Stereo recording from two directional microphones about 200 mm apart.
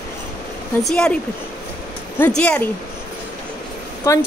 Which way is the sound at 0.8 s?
5° left (ahead or behind).